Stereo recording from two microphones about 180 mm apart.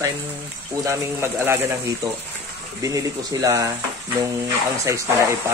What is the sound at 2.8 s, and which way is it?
Speech, 20° right (ahead or behind).